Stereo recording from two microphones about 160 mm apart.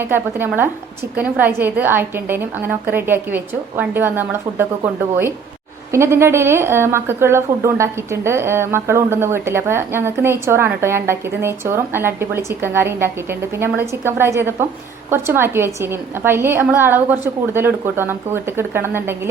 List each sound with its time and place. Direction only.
0.0 s a woman's voice: 15° right (ahead or behind)